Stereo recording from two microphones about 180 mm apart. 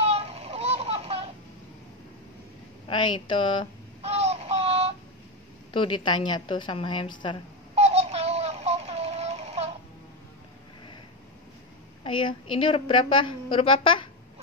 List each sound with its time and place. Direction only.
0.0 s a sound: 35° right (ahead or behind)
2.9 s a woman's voice: 25° left (ahead or behind)
4.0 s synthetic singing: 35° right (ahead or behind)
5.7 s a woman's voice: 25° left (ahead or behind)
7.7 s a sound: 35° right (ahead or behind)
12.0 s a woman's voice: 30° left (ahead or behind)